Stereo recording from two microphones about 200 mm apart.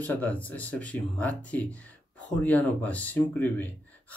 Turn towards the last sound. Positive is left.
turn(degrees=10)  # may be behind; listen again after turning